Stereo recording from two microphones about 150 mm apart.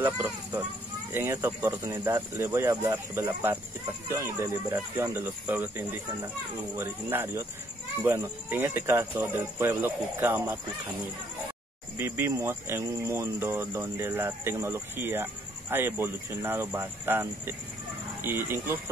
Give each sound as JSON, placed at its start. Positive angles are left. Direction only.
{"t": 0.0, "sound": "speech", "side_deg": -15}
{"t": 12.0, "sound": "speech", "side_deg": -20}